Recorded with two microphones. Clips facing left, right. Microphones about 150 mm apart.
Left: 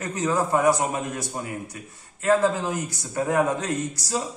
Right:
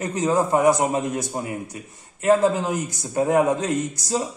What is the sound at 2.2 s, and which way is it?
A man's voice, 20° right (ahead or behind).